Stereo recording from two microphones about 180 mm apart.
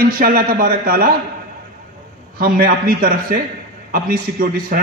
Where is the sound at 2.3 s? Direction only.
55° right (ahead or behind).